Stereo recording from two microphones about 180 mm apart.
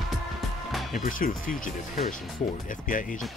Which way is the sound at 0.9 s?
50° left (ahead or behind).